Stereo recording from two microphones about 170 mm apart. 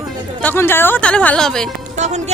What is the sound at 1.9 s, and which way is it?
Music, 45° right (ahead or behind).